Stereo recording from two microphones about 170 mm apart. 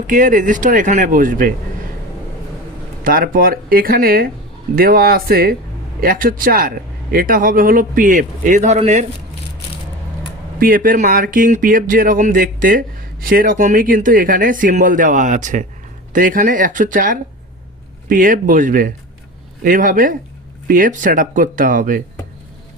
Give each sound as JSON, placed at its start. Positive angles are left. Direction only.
{"t": 0.1, "sound": "speech", "side_deg": -50}
{"t": 3.0, "sound": "speech", "side_deg": -55}
{"t": 10.6, "sound": "speech", "side_deg": -55}